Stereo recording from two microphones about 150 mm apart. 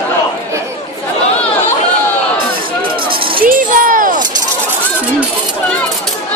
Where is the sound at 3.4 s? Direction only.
70° right (ahead or behind).